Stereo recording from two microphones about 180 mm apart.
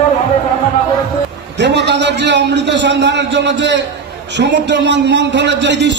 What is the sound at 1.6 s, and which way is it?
A man's voice, 75° right (ahead or behind).